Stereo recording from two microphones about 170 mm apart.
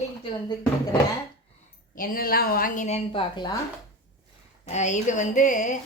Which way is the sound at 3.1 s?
25° left (ahead or behind).